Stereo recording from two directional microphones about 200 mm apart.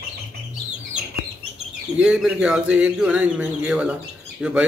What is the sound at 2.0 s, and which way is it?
A man's voice, 5° right (ahead or behind).